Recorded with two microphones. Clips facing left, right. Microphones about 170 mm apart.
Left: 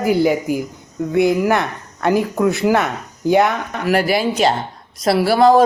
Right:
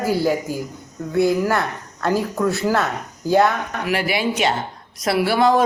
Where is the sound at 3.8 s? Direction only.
40° left (ahead or behind).